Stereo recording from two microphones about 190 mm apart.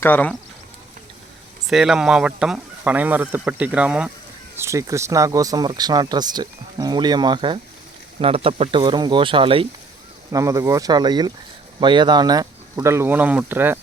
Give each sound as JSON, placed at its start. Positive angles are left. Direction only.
{"t": 0.0, "sound": "speech", "side_deg": 10}
{"t": 1.6, "sound": "speech", "side_deg": -5}
{"t": 10.3, "sound": "speech", "side_deg": -15}